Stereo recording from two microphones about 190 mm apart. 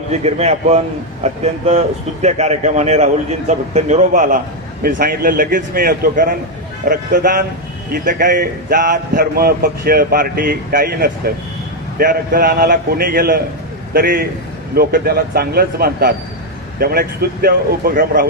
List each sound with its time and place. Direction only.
0.1 s a man's voice: 35° right (ahead or behind)